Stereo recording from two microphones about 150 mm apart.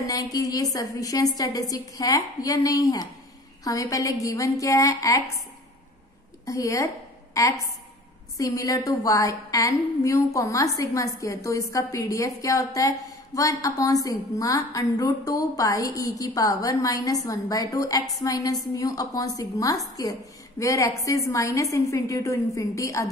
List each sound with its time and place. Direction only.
0.0 s a woman's voice: 25° left (ahead or behind)
6.4 s a woman's voice: 20° left (ahead or behind)
8.4 s a woman's voice: 20° left (ahead or behind)